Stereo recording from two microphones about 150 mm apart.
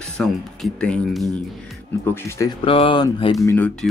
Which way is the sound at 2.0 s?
20° left (ahead or behind).